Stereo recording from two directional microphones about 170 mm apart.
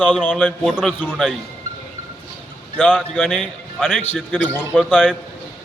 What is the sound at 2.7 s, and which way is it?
A man's voice, centre (ahead or behind).